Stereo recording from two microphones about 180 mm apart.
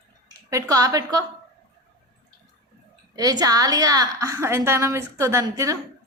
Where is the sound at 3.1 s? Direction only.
20° right (ahead or behind).